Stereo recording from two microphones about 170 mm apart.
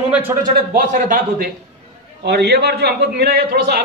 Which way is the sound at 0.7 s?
55° right (ahead or behind).